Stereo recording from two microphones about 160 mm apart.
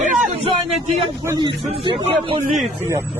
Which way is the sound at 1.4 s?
30° right (ahead or behind).